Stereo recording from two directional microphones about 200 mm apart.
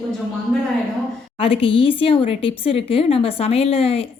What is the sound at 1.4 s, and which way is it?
Speech, 25° left (ahead or behind).